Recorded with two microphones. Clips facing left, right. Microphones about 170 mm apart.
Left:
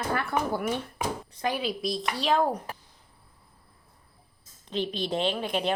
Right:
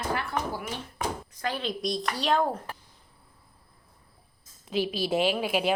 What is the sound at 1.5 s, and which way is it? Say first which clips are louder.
Speech: left 1 dB; 5° left (ahead or behind).